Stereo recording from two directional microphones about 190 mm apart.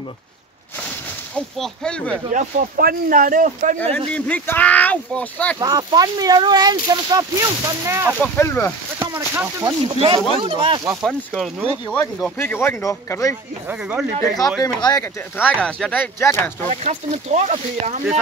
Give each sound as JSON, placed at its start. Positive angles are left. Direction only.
{"t": 1.6, "sound": "speech", "side_deg": 5}
{"t": 2.2, "sound": "speech", "side_deg": -45}
{"t": 4.1, "sound": "speech", "side_deg": 5}
{"t": 5.6, "sound": "speech", "side_deg": -20}
{"t": 8.2, "sound": "speech", "side_deg": 15}
{"t": 9.1, "sound": "speech", "side_deg": -10}
{"t": 9.9, "sound": "speech", "side_deg": -30}
{"t": 10.9, "sound": "speech", "side_deg": 0}
{"t": 11.9, "sound": "speech", "side_deg": 10}
{"t": 13.7, "sound": "speech", "side_deg": -10}
{"t": 14.6, "sound": "speech", "side_deg": 20}
{"t": 15.6, "sound": "speech", "side_deg": 5}
{"t": 16.6, "sound": "speech", "side_deg": -35}